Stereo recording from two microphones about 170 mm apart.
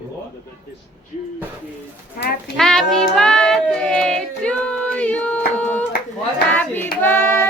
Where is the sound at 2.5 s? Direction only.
Centre (ahead or behind).